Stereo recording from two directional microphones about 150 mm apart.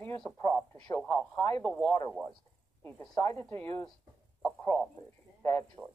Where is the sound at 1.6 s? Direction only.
5° left (ahead or behind).